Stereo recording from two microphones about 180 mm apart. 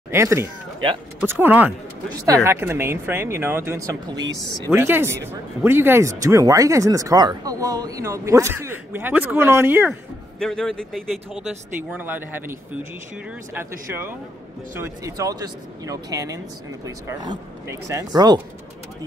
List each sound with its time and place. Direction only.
0.1 s speech: 15° right (ahead or behind)
10.4 s speech: 5° left (ahead or behind)
11.9 s speech: 10° right (ahead or behind)
13.6 s speech: 10° right (ahead or behind)